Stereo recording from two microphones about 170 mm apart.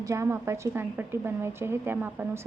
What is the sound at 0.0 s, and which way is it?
A woman's voice, 15° right (ahead or behind).